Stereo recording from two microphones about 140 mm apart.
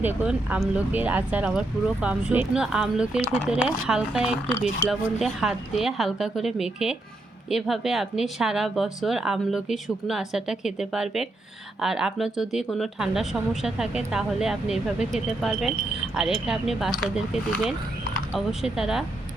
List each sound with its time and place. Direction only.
0.0 s speech: 10° right (ahead or behind)
4.8 s speech: 20° left (ahead or behind)
5.2 s speech: centre (ahead or behind)